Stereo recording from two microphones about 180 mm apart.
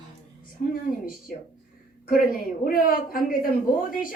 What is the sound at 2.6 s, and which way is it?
Speech, 55° left (ahead or behind).